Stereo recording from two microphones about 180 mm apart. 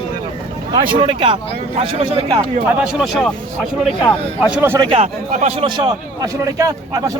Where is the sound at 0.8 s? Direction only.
30° right (ahead or behind).